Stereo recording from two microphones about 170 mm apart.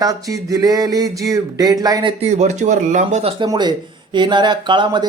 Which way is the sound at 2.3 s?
45° right (ahead or behind).